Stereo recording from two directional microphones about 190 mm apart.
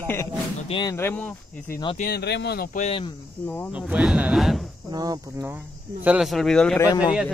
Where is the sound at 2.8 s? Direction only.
30° left (ahead or behind).